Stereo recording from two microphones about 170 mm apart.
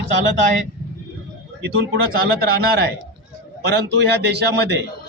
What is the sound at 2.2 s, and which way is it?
Speech, 65° right (ahead or behind).